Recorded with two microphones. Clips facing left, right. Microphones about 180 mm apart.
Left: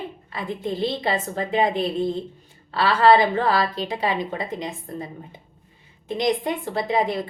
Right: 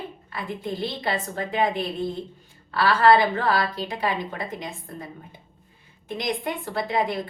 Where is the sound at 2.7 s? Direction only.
20° left (ahead or behind).